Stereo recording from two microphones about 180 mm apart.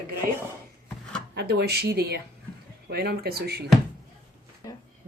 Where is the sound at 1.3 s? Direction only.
65° right (ahead or behind).